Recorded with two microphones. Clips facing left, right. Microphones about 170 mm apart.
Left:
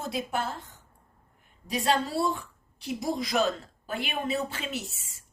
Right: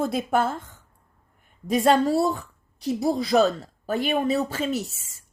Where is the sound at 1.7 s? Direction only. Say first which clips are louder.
Right 8 dB; 50° right (ahead or behind).